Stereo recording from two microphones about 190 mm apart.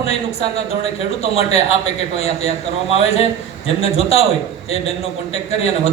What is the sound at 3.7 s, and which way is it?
Speech, 30° left (ahead or behind).